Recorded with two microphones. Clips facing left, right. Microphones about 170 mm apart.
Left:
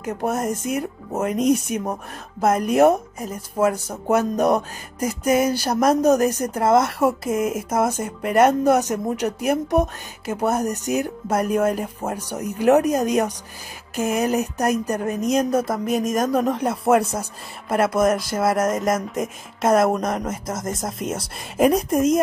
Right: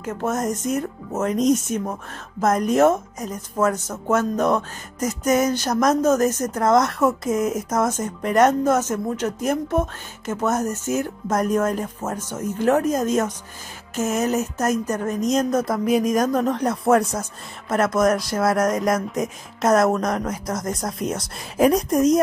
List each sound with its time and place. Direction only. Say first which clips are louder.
0.0 s speech: even; 10° left (ahead or behind)
21.8 s speech: right 1 dB; 30° left (ahead or behind)